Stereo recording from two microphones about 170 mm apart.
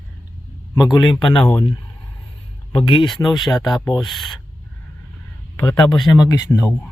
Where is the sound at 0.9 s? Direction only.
25° left (ahead or behind).